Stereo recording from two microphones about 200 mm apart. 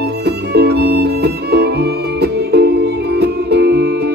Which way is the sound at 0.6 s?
55° right (ahead or behind).